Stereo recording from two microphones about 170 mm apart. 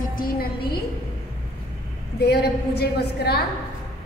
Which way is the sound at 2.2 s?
75° left (ahead or behind).